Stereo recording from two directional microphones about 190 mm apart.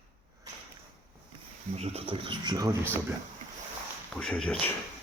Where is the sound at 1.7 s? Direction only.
30° right (ahead or behind).